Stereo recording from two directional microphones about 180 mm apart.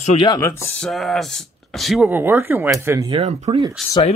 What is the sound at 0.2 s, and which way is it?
Speech, 20° left (ahead or behind).